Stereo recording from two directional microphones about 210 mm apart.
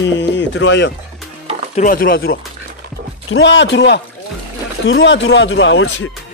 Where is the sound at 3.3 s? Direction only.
60° left (ahead or behind).